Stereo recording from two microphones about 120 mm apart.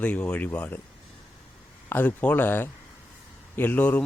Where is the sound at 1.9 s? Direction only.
15° left (ahead or behind).